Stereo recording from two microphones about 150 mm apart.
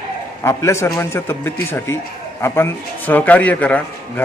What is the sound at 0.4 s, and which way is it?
A man's voice, 20° left (ahead or behind).